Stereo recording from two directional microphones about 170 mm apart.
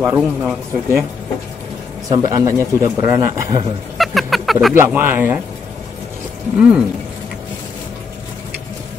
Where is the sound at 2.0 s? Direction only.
20° right (ahead or behind).